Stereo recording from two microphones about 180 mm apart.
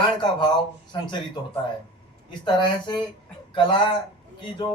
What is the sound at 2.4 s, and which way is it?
Speech, 25° left (ahead or behind).